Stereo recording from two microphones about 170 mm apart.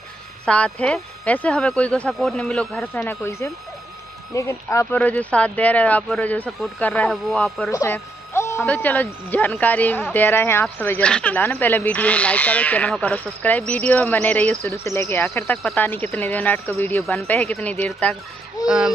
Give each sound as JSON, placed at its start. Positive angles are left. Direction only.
{"t": 0.5, "sound": "speech", "side_deg": 5}
{"t": 7.7, "sound": "speech", "side_deg": 15}